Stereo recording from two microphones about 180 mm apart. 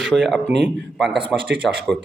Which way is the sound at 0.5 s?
70° right (ahead or behind).